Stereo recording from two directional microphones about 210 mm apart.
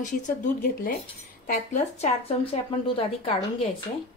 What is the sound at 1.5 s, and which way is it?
Speech, 35° left (ahead or behind).